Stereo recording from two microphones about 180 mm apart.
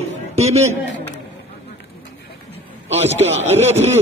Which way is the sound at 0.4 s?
35° right (ahead or behind).